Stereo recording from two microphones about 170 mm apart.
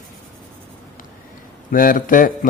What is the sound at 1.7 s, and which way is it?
Speech, 55° left (ahead or behind).